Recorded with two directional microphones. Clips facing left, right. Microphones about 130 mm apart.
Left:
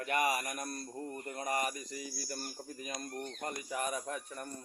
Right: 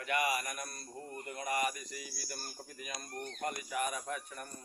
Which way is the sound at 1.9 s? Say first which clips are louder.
Left 4 dB; 30° left (ahead or behind).